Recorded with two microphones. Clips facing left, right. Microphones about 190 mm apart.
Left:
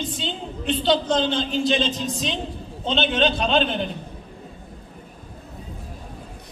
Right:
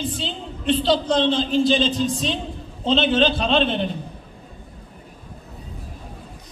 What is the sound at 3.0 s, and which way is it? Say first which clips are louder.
Speech: right 2 dB; 30° right (ahead or behind).